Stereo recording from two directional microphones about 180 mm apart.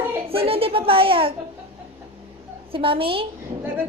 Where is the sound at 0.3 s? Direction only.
30° right (ahead or behind).